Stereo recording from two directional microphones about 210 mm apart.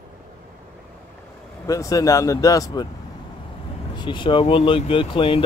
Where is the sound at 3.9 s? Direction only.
20° left (ahead or behind).